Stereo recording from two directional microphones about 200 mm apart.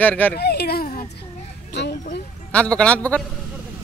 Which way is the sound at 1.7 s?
60° left (ahead or behind).